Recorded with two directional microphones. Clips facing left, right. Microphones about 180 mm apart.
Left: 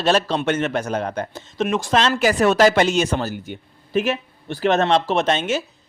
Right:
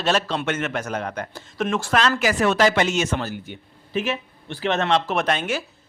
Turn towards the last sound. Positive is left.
turn(degrees=25)  # may be behind; listen again after turning